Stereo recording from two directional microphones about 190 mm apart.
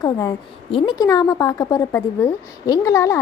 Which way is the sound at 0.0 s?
20° left (ahead or behind).